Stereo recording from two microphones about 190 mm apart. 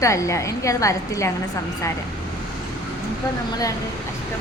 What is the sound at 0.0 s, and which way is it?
A woman's voice, 15° left (ahead or behind).